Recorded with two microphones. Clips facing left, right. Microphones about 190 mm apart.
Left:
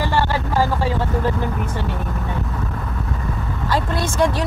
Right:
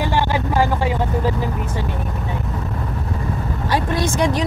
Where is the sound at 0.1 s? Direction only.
15° right (ahead or behind).